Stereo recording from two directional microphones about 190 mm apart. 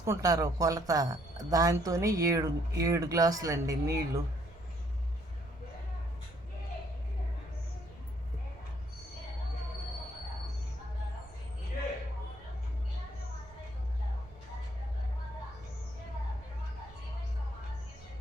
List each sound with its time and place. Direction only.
0.0 s speech: 15° right (ahead or behind)